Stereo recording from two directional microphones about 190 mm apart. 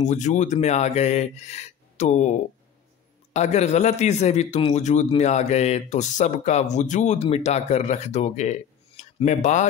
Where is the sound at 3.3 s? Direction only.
35° left (ahead or behind).